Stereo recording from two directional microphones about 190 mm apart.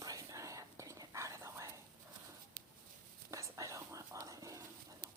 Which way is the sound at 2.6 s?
45° right (ahead or behind).